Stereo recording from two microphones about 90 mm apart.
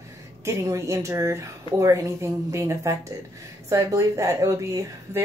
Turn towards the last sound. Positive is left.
turn(degrees=-35)  # may be behind; listen again after turning